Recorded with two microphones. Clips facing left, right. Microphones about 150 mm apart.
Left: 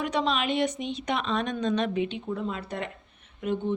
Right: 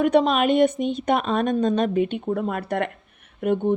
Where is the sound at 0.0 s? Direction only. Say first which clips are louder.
Right 9 dB; 50° right (ahead or behind).